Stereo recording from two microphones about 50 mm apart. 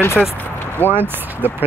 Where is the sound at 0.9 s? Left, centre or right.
Right.